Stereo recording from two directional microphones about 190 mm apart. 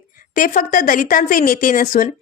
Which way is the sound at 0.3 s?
45° left (ahead or behind).